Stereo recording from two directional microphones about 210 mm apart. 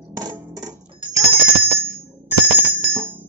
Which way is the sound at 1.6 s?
10° right (ahead or behind).